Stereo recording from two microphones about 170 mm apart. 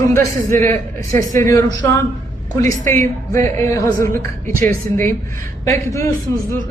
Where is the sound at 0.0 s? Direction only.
15° left (ahead or behind).